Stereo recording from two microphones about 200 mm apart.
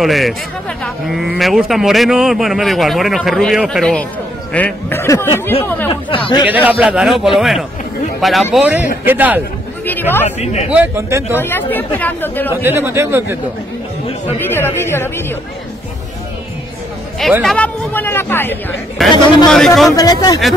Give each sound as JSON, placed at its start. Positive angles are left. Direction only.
{"t": 0.0, "sound": "speech", "side_deg": 0}
{"t": 6.0, "sound": "speech", "side_deg": 25}
{"t": 6.4, "sound": "speech", "side_deg": -5}
{"t": 9.8, "sound": "speech", "side_deg": 10}
{"t": 10.2, "sound": "speech", "side_deg": 35}
{"t": 10.7, "sound": "speech", "side_deg": -10}
{"t": 11.3, "sound": "speech", "side_deg": 10}
{"t": 12.4, "sound": "speech", "side_deg": -10}
{"t": 14.5, "sound": "speech", "side_deg": 10}
{"t": 17.2, "sound": "speech", "side_deg": 0}
{"t": 19.9, "sound": "speech", "side_deg": 20}